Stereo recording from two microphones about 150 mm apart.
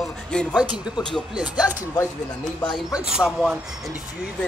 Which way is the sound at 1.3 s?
10° right (ahead or behind).